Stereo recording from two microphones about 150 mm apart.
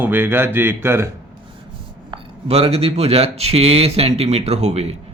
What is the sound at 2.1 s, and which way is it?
Speech, 40° right (ahead or behind).